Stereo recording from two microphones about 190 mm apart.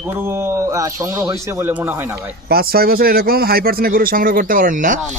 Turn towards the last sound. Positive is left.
turn(degrees=-45)  # may be behind; listen again after turning